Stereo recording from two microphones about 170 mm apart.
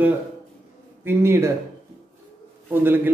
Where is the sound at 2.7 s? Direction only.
10° right (ahead or behind).